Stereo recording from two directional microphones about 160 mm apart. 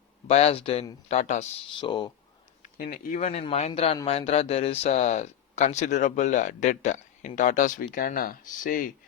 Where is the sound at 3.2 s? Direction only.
40° left (ahead or behind).